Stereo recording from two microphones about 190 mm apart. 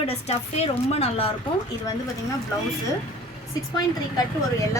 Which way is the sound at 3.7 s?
20° left (ahead or behind).